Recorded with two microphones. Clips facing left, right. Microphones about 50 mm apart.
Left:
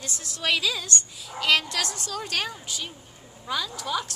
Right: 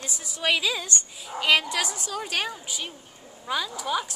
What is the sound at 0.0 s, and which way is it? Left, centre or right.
A woman's voice, centre.